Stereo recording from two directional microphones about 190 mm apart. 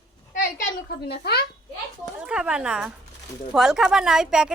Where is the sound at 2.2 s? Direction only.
5° right (ahead or behind).